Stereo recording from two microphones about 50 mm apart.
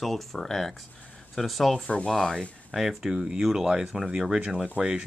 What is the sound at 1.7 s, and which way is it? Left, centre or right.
Speech, centre.